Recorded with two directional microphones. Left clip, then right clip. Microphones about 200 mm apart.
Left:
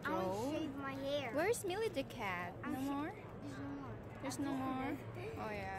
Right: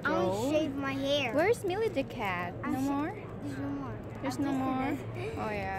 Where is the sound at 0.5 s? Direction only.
35° right (ahead or behind).